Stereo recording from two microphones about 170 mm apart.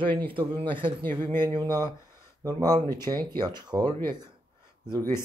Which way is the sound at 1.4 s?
25° right (ahead or behind).